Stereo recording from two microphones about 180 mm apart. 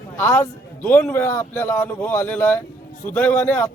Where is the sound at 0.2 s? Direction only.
15° left (ahead or behind).